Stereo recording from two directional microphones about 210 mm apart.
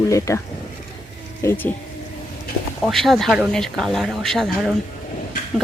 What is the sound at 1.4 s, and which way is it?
Speech, 10° left (ahead or behind).